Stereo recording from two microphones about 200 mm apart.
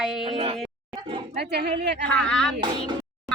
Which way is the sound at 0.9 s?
25° right (ahead or behind).